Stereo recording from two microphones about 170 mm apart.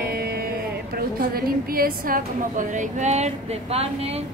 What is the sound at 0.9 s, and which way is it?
A woman's voice, 60° right (ahead or behind).